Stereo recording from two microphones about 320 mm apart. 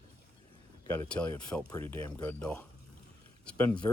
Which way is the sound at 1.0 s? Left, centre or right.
Centre.